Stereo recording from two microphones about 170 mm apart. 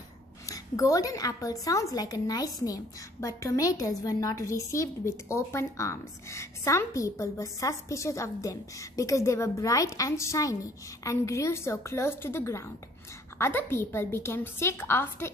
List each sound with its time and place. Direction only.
0.5 s a woman's voice: 20° left (ahead or behind)